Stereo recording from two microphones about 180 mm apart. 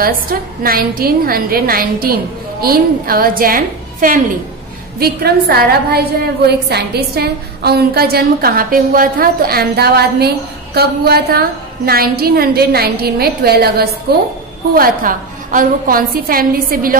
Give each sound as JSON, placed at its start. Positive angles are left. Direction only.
{"t": 0.0, "sound": "a woman's voice", "side_deg": -55}
{"t": 14.8, "sound": "a woman's voice", "side_deg": -50}